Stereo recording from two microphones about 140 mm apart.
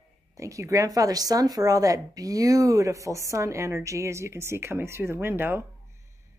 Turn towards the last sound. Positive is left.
turn(degrees=-15)  # may be behind; listen again after turning